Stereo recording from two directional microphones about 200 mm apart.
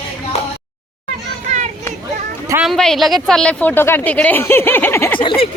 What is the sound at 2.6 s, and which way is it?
Speech, centre (ahead or behind).